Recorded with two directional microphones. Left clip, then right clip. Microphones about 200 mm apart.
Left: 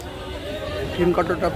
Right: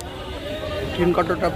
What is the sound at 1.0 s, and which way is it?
Speech, 5° left (ahead or behind).